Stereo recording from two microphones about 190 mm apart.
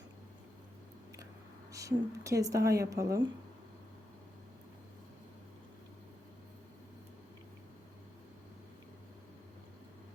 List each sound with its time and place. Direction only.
1.7 s speech: 15° right (ahead or behind)